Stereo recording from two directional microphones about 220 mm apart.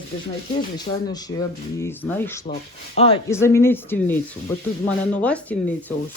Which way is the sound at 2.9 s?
25° left (ahead or behind).